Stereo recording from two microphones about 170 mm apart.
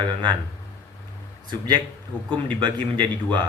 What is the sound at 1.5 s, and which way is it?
Speech, 25° right (ahead or behind).